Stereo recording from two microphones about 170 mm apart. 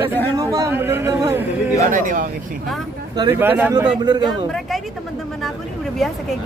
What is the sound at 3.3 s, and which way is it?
Speech, 10° right (ahead or behind).